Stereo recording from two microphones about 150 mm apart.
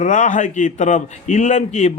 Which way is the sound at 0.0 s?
55° left (ahead or behind).